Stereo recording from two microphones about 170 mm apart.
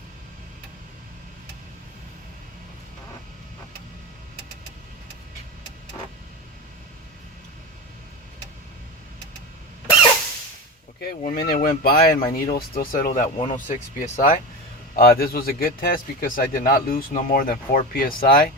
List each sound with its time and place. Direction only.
11.0 s a man's voice: 50° left (ahead or behind)
13.3 s speech: 30° left (ahead or behind)
13.7 s speech: 45° left (ahead or behind)
14.9 s a man's voice: 60° left (ahead or behind)